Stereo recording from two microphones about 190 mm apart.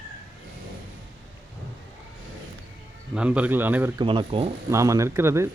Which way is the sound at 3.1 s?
5° right (ahead or behind).